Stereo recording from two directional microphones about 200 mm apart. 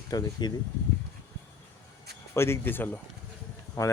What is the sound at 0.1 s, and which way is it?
Speech, 20° left (ahead or behind).